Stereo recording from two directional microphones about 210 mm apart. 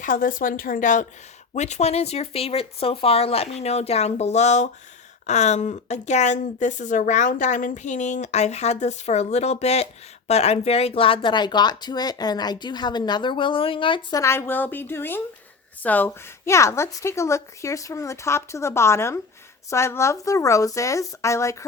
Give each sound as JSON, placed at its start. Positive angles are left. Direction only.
{"t": 0.0, "sound": "a woman's voice", "side_deg": 40}